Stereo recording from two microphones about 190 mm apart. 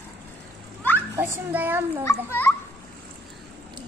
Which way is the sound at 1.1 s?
10° right (ahead or behind).